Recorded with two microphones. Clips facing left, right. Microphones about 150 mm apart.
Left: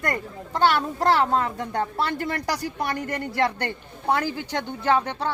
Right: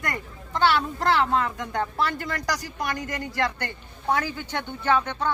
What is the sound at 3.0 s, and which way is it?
Speech, 60° left (ahead or behind).